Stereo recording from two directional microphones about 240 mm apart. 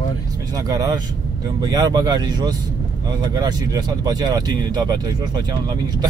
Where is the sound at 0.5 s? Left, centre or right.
Centre.